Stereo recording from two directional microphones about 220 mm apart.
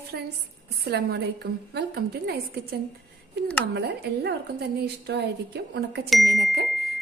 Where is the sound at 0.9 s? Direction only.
50° right (ahead or behind).